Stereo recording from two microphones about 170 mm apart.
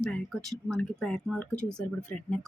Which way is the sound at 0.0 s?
5° left (ahead or behind).